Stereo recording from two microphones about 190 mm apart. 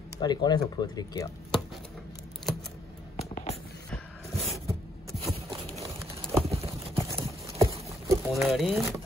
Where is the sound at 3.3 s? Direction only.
35° left (ahead or behind).